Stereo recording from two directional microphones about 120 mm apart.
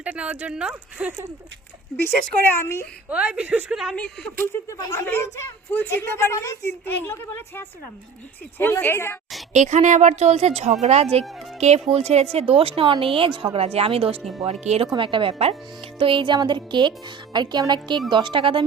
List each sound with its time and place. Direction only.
0.0 s speech: 10° right (ahead or behind)
2.0 s a woman's voice: 20° left (ahead or behind)
3.1 s speech: 10° right (ahead or behind)
3.9 s speech: 5° left (ahead or behind)
4.8 s a woman's voice: 25° left (ahead or behind)
9.5 s a woman's voice: 80° right; by 14.2 s 55° right (ahead or behind)
14.4 s a woman's voice: 65° right (ahead or behind)
14.9 s speech: 45° right (ahead or behind)